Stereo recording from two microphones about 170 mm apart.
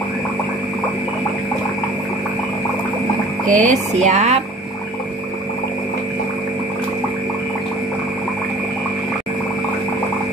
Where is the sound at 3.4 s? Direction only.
50° right (ahead or behind).